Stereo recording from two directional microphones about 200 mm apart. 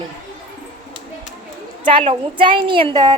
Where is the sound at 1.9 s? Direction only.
30° right (ahead or behind).